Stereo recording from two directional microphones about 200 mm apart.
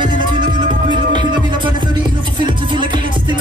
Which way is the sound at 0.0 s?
20° right (ahead or behind).